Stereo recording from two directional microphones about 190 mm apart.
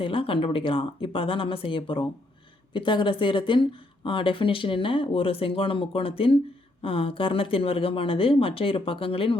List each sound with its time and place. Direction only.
0.0 s speech: 30° left (ahead or behind)